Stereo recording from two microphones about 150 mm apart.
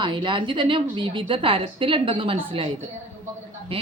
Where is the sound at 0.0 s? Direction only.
35° right (ahead or behind).